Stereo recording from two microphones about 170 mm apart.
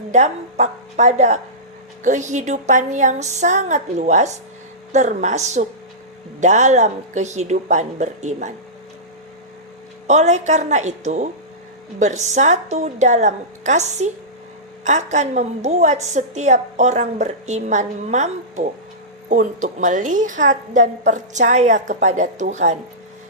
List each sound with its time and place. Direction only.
0.1 s a woman's voice: 40° right (ahead or behind)
10.1 s a woman's voice: 40° right (ahead or behind)